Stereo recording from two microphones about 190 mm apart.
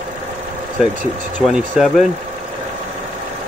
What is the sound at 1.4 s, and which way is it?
Speech, centre (ahead or behind).